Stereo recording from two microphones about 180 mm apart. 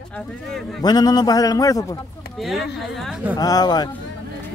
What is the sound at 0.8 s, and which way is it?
Speech, 20° left (ahead or behind).